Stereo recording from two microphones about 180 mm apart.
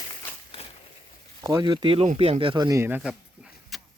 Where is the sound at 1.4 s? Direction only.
25° right (ahead or behind).